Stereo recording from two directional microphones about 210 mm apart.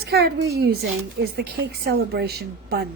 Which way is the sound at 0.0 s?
50° right (ahead or behind).